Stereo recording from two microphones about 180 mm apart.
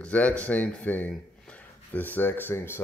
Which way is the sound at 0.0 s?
10° left (ahead or behind).